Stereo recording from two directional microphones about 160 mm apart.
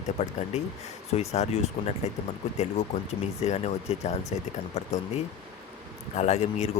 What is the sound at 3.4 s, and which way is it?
Speech, 40° left (ahead or behind).